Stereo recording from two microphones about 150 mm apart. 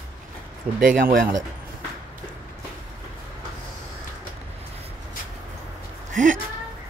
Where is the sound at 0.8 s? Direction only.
65° right (ahead or behind).